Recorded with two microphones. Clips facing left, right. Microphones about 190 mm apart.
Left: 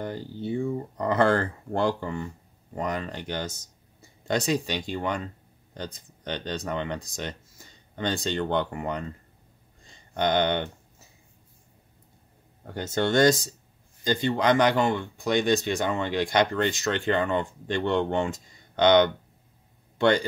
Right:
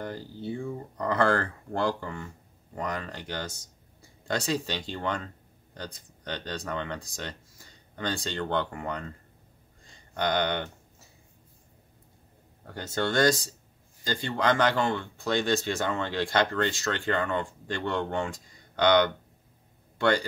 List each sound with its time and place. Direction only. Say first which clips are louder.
0.0 s speech: left 3 dB; 20° left (ahead or behind)
10.1 s speech: left 4 dB; 25° left (ahead or behind)
12.6 s speech: left 4 dB; 20° left (ahead or behind)